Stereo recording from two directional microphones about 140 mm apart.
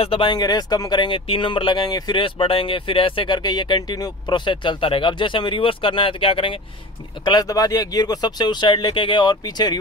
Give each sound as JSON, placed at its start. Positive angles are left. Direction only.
{"t": 0.0, "sound": "speech", "side_deg": 40}
{"t": 7.2, "sound": "speech", "side_deg": 25}